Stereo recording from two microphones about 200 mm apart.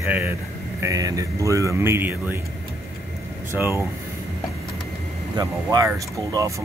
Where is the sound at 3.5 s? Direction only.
15° right (ahead or behind).